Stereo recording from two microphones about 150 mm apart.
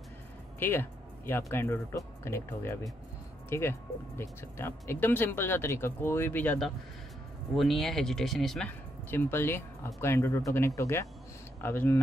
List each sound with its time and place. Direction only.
0.6 s speech: 15° left (ahead or behind)
7.5 s speech: centre (ahead or behind)